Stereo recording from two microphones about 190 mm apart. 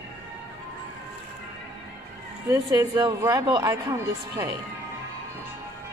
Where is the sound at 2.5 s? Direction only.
20° right (ahead or behind).